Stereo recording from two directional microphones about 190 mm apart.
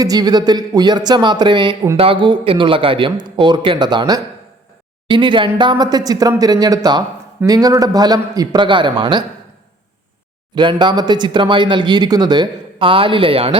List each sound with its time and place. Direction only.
0.0 s speech: 20° right (ahead or behind)
10.5 s speech: 25° right (ahead or behind)